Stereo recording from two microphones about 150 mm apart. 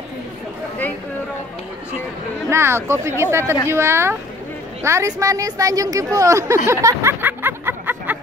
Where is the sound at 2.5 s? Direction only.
15° right (ahead or behind).